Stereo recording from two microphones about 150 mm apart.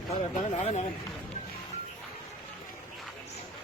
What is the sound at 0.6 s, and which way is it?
Speech, 50° left (ahead or behind).